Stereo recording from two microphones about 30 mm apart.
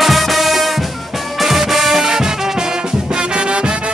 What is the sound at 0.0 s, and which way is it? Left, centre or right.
Music, centre.